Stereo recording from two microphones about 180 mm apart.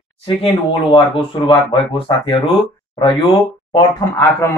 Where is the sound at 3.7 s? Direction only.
15° left (ahead or behind).